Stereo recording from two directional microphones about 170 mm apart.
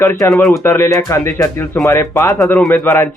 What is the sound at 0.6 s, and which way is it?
Speech, 15° left (ahead or behind).